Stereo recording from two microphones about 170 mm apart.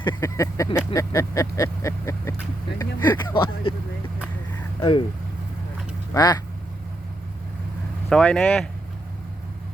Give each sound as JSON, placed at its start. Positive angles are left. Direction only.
{"t": 0.0, "sound": "speech", "side_deg": 20}
{"t": 4.8, "sound": "speech", "side_deg": 30}
{"t": 6.1, "sound": "speech", "side_deg": 25}
{"t": 8.1, "sound": "speech", "side_deg": 5}